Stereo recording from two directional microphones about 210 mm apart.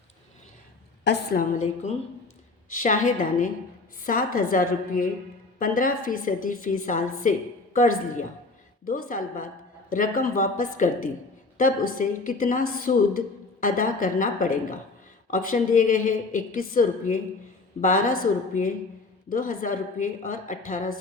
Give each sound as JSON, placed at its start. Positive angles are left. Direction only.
{"t": 1.0, "sound": "a woman's voice", "side_deg": 45}